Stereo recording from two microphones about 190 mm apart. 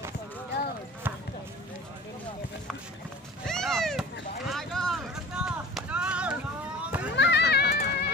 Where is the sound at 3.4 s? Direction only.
Centre (ahead or behind).